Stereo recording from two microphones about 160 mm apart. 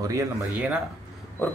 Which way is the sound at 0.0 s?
20° right (ahead or behind).